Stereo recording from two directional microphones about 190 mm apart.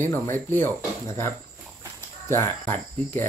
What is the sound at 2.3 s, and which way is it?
Speech, 10° left (ahead or behind).